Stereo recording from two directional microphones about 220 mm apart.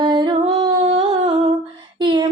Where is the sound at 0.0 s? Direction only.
20° right (ahead or behind).